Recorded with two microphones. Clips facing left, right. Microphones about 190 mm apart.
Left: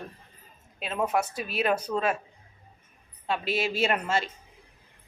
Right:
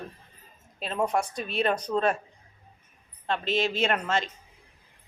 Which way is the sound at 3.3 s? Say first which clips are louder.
Right 1 dB; 10° left (ahead or behind).